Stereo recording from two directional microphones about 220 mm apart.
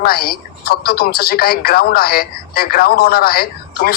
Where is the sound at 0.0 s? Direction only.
45° left (ahead or behind).